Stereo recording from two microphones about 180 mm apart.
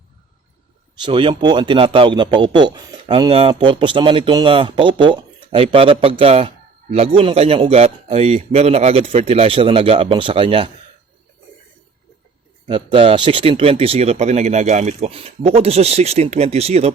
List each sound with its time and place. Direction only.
1.0 s a man's voice: 30° right (ahead or behind)
12.6 s speech: 30° right (ahead or behind)